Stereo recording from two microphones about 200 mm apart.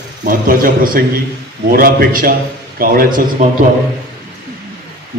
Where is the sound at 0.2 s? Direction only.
45° right (ahead or behind).